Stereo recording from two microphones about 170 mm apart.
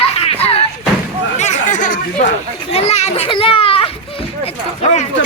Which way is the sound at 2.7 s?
40° left (ahead or behind).